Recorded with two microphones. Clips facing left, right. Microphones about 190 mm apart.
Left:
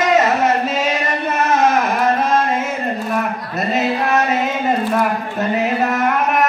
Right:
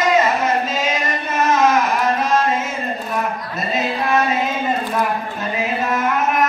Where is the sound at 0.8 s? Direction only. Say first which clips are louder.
Left 3 dB; 60° left (ahead or behind).